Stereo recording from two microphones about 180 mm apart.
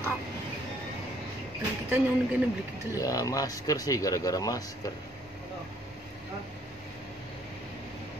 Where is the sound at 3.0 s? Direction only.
20° left (ahead or behind).